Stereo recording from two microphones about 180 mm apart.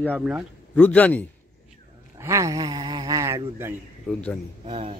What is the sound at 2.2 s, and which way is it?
Speech, 20° right (ahead or behind).